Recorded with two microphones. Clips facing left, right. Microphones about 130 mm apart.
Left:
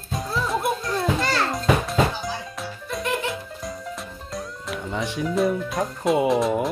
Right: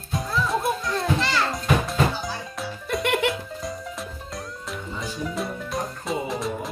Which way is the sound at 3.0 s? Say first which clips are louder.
Right 3 dB; 75° right (ahead or behind).